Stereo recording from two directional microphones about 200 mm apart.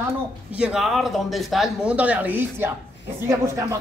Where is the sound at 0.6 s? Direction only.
Centre (ahead or behind).